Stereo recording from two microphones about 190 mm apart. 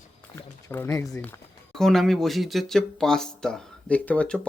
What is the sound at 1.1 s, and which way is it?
A man's voice, 5° left (ahead or behind).